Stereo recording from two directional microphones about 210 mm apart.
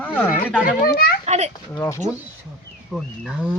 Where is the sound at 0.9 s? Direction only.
45° left (ahead or behind).